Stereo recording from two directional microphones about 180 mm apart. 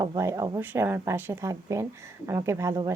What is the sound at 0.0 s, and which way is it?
Speech, 20° right (ahead or behind).